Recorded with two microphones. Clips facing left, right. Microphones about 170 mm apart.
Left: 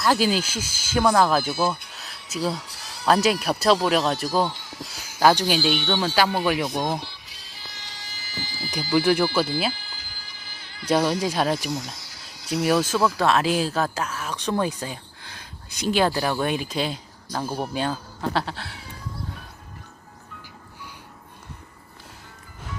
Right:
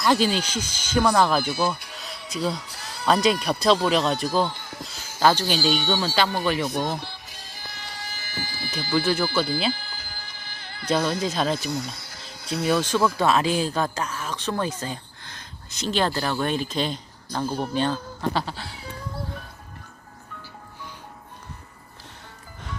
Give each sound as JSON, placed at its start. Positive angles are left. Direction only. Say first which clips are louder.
{"t": 0.0, "sound": "speech", "louder": "even", "side_deg": 5}
{"t": 2.6, "sound": "music", "louder": "right 3 dB", "side_deg": -60}
{"t": 3.1, "sound": "speech", "louder": "left 1 dB", "side_deg": 5}
{"t": 4.5, "sound": "a sound", "louder": "right 1 dB", "side_deg": -55}
{"t": 5.2, "sound": "speech", "louder": "left 2 dB", "side_deg": 10}
{"t": 5.5, "sound": "speech", "louder": "even", "side_deg": -45}
{"t": 6.1, "sound": "speech", "louder": "left 3 dB", "side_deg": 10}
{"t": 7.0, "sound": "music", "louder": "right 3 dB", "side_deg": -50}
{"t": 8.7, "sound": "speech", "louder": "left 3 dB", "side_deg": 15}
{"t": 9.7, "sound": "music", "louder": "right 4 dB", "side_deg": -55}
{"t": 10.8, "sound": "speech", "louder": "left 2 dB", "side_deg": 10}
{"t": 11.9, "sound": "music", "louder": "right 3 dB", "side_deg": -55}
{"t": 12.6, "sound": "speech", "louder": "left 1 dB", "side_deg": 10}